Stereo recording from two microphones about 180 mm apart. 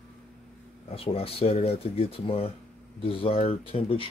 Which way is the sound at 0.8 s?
30° left (ahead or behind).